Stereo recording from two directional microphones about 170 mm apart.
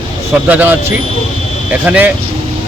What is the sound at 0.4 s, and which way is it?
Speech, 10° right (ahead or behind).